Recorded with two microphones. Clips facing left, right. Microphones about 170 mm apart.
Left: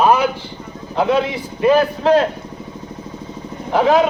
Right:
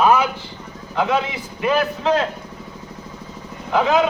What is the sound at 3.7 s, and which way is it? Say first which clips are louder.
Speech: left 3 dB; 30° left (ahead or behind).